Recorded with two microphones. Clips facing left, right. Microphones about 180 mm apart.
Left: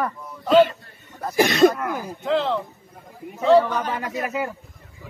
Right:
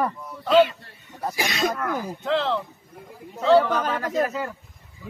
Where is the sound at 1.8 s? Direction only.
5° left (ahead or behind).